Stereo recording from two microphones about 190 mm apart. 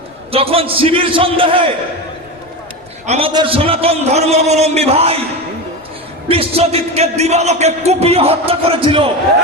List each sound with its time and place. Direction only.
0.3 s a man's voice: 30° right (ahead or behind)
3.1 s speech: 30° right (ahead or behind)
6.2 s speech: 30° right (ahead or behind)